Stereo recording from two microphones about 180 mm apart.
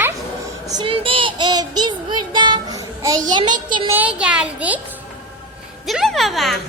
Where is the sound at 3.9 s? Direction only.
5° right (ahead or behind).